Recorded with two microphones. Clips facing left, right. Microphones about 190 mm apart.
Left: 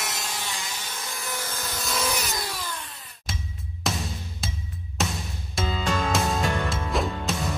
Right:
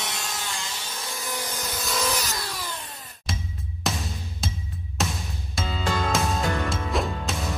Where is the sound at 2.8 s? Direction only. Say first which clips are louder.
Right 3 dB; 40° right (ahead or behind).